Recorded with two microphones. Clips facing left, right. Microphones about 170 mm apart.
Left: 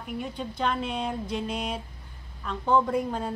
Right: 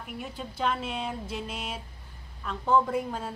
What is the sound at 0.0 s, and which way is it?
A woman's voice, 5° right (ahead or behind).